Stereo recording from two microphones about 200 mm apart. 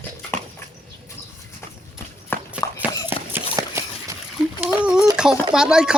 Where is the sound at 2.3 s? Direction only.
10° left (ahead or behind).